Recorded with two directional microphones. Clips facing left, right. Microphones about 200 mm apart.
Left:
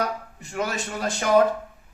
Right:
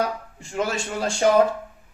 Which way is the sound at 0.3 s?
30° right (ahead or behind).